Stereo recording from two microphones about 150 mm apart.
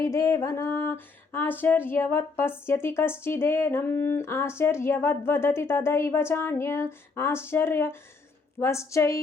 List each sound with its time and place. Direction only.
0.0 s speech: 20° left (ahead or behind)